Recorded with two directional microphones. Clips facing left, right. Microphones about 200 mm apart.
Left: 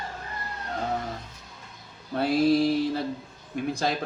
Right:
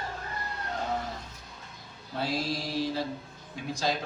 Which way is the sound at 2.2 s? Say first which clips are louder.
Left 10 dB; 55° left (ahead or behind).